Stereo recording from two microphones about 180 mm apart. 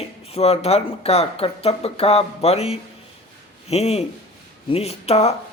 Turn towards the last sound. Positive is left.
turn(degrees=35)  # may be behind; listen again after turning